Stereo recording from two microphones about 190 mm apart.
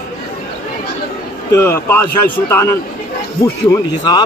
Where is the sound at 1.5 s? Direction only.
15° left (ahead or behind).